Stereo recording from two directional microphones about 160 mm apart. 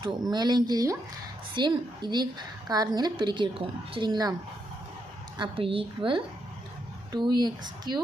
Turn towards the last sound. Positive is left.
turn(degrees=-25)  # may be behind; listen again after turning